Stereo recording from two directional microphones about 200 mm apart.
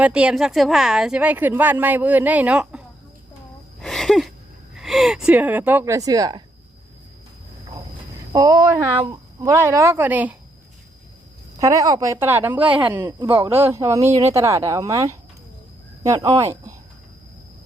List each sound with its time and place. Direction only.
0.0 s a woman's voice: 5° right (ahead or behind)
3.8 s a sound: centre (ahead or behind)
4.7 s speech: centre (ahead or behind); by 6.4 s 20° right (ahead or behind)
8.3 s a woman's voice: 20° right (ahead or behind)
11.6 s a woman's voice: 15° right (ahead or behind)